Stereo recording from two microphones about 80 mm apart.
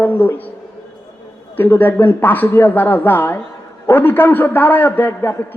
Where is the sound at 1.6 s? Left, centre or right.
Left.